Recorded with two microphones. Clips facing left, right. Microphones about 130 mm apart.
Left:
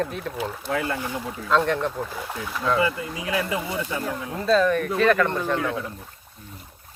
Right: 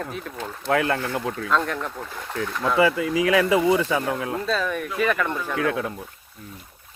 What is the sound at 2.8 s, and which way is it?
Speech, 85° right.